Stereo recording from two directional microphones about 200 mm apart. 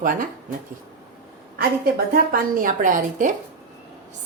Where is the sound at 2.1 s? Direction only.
45° right (ahead or behind).